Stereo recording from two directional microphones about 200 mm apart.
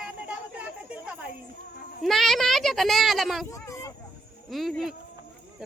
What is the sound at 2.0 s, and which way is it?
A woman's voice, centre (ahead or behind).